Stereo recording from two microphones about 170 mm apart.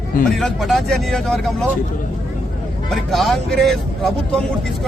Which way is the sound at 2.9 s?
Centre (ahead or behind).